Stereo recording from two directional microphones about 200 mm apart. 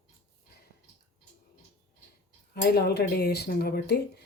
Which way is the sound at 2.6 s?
55° left (ahead or behind).